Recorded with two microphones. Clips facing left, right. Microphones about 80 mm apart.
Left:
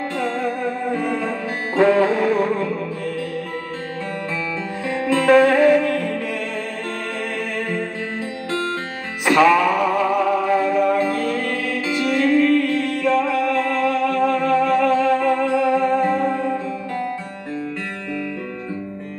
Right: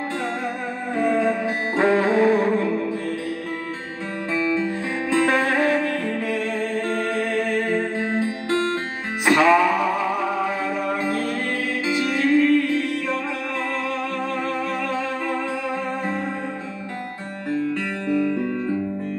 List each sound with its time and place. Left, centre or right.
1.0 s music: centre
5.0 s music: right
7.7 s music: right
11.1 s music: right; by 16.3 s centre